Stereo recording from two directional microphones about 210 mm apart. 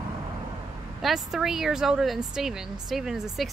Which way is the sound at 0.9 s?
Centre (ahead or behind).